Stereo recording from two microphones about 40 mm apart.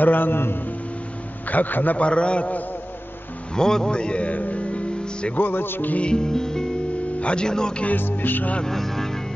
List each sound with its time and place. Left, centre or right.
0.0 s a man's voice: left
1.5 s music: left
2.0 s a man's voice: left
3.5 s music: centre
3.9 s speech: left
5.4 s a man's voice: left
6.1 s music: centre
7.2 s speech: left
7.4 s a man's voice: centre
8.0 s music: left
8.6 s music: centre